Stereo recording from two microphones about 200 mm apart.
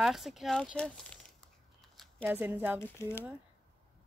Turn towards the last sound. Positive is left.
turn(degrees=10)  # may be behind; listen again after turning